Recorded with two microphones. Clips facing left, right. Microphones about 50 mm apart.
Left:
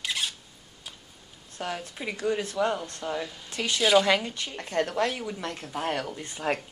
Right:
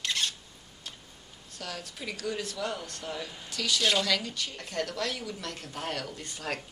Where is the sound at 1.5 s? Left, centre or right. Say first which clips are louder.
Left 6 dB; left.